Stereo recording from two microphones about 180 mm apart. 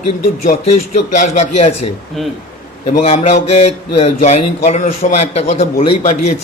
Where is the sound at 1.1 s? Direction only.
40° left (ahead or behind).